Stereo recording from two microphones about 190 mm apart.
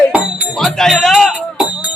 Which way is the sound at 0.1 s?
Centre (ahead or behind).